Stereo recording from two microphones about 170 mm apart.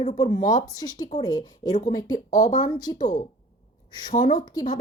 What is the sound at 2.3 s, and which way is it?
Speech, 50° left (ahead or behind).